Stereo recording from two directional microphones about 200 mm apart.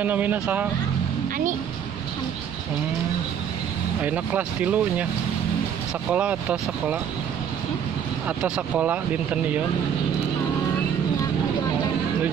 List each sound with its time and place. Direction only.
0.0 s speech: 10° right (ahead or behind)
4.0 s speech: 5° right (ahead or behind)
6.1 s speech: 5° right (ahead or behind)
8.4 s speech: 5° right (ahead or behind)